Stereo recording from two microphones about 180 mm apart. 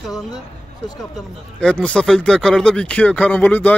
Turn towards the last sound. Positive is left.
turn(degrees=10)  # may be behind; listen again after turning